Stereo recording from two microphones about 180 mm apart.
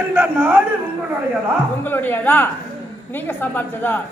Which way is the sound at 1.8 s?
10° left (ahead or behind).